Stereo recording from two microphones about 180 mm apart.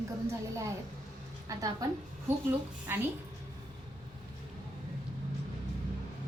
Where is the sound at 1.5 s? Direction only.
20° right (ahead or behind).